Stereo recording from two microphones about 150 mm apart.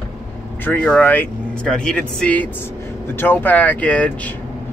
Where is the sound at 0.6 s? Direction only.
10° left (ahead or behind).